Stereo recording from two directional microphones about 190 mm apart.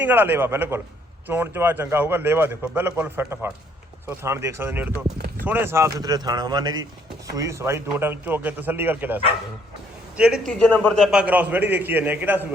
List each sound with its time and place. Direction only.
0.0 s a man's voice: 10° right (ahead or behind)